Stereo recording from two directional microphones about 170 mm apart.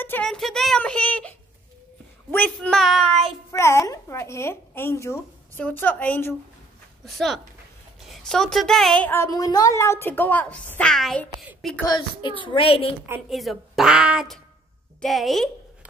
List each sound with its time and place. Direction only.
0.0 s a woman's voice: 10° left (ahead or behind)
2.3 s speech: 10° left (ahead or behind)
3.5 s a woman's voice: 15° left (ahead or behind)
11.8 s a child's voice: 25° left (ahead or behind)
13.3 s speech: centre (ahead or behind)